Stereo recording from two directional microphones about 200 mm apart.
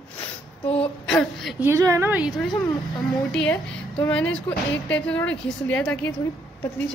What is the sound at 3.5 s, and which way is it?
A woman's voice, 5° left (ahead or behind).